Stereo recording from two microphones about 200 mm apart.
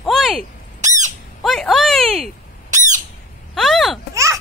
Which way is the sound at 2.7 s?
40° right (ahead or behind).